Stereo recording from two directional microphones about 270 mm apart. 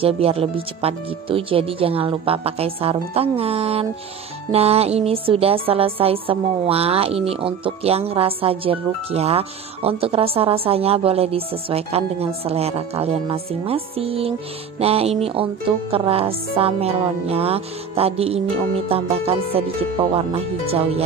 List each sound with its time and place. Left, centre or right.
0.0 s speech: right